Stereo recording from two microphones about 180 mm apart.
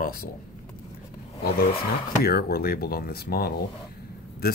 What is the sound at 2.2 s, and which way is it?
Speech, 60° left (ahead or behind).